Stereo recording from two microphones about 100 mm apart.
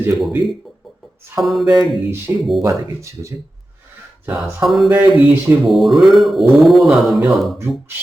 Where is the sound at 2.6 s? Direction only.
35° right (ahead or behind).